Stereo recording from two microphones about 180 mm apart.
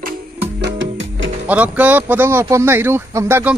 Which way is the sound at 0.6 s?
80° right.